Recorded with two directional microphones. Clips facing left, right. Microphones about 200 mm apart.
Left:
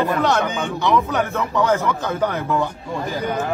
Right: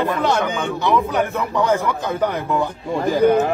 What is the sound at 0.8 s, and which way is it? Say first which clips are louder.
A man's voice: even; 10° right (ahead or behind).